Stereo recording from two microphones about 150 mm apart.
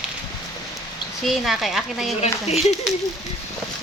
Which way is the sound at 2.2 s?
45° left (ahead or behind).